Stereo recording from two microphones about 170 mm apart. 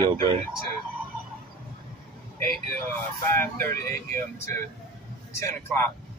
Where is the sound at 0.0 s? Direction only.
30° right (ahead or behind).